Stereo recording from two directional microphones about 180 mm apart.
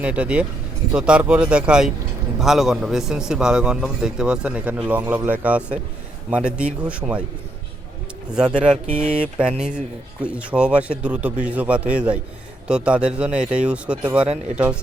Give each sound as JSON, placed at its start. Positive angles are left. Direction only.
{"t": 0.0, "sound": "a man's voice", "side_deg": -5}
{"t": 8.4, "sound": "a man's voice", "side_deg": -5}